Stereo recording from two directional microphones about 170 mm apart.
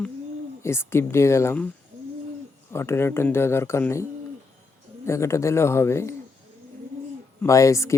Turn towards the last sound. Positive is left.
turn(degrees=20)  # may be behind; listen again after turning